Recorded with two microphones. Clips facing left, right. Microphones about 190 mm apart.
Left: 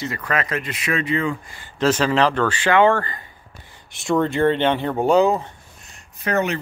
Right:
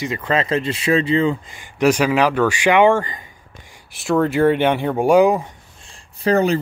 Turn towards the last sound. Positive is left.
turn(degrees=-35)  # may be behind; listen again after turning